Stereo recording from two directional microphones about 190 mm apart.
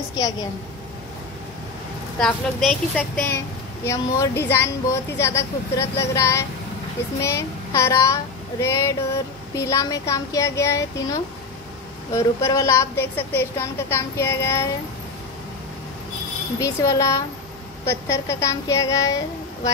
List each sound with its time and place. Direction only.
2.1 s a woman's voice: centre (ahead or behind)
3.8 s a woman's voice: 15° left (ahead or behind)
7.2 s child singing: 15° left (ahead or behind)
9.6 s a woman's voice: 15° left (ahead or behind)
16.5 s a woman's voice: 15° left (ahead or behind)